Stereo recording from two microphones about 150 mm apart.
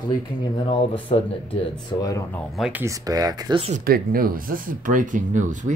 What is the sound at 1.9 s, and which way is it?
Speech, 25° left (ahead or behind).